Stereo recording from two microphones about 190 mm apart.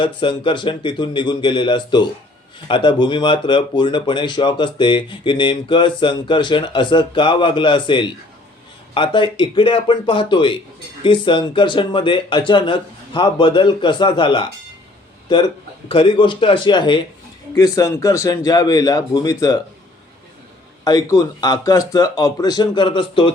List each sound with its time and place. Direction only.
0.0 s speech: 25° left (ahead or behind)
20.8 s speech: 20° left (ahead or behind)